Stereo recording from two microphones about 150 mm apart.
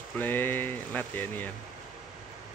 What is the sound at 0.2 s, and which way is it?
Speech, 15° left (ahead or behind).